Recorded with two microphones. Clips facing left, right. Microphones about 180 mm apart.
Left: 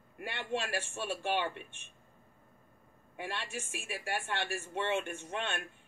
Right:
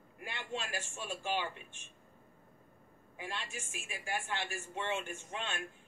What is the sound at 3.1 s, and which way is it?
Speech, 60° left (ahead or behind).